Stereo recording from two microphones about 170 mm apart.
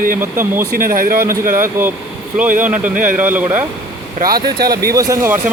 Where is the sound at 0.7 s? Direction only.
55° right (ahead or behind).